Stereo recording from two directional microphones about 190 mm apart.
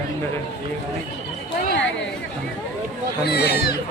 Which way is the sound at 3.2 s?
55° left (ahead or behind).